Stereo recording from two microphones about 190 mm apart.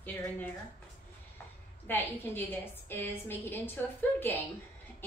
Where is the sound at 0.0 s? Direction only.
10° left (ahead or behind).